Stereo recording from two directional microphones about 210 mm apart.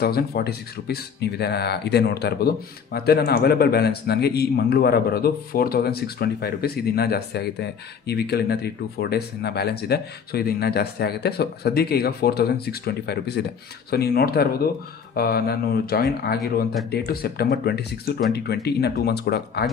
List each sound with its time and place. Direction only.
0.0 s speech: 45° left (ahead or behind)